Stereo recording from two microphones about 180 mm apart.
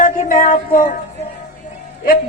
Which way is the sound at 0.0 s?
50° left (ahead or behind).